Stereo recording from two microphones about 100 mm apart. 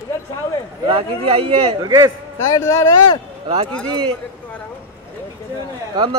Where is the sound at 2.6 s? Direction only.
30° left (ahead or behind).